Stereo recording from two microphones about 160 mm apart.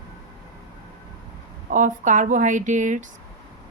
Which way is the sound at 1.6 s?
55° right (ahead or behind).